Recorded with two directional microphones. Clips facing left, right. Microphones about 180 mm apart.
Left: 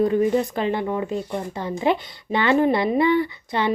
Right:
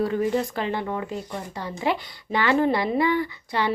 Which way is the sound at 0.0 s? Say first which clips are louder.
Left 4 dB; 20° left (ahead or behind).